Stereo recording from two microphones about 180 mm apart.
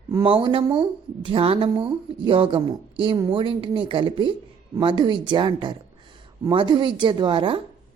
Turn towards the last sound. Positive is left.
turn(degrees=-25)  # may be behind; listen again after turning